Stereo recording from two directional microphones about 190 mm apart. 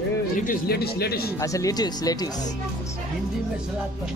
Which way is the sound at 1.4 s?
15° left (ahead or behind).